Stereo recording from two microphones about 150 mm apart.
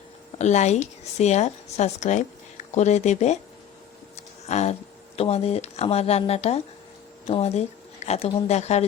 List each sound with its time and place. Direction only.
0.3 s a woman's voice: 50° left (ahead or behind)
4.4 s a woman's voice: 50° left (ahead or behind)